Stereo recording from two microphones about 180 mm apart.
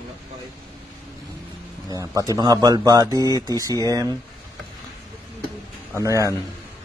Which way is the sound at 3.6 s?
20° right (ahead or behind).